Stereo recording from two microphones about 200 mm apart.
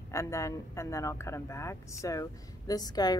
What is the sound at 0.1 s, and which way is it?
A woman's voice, 15° left (ahead or behind).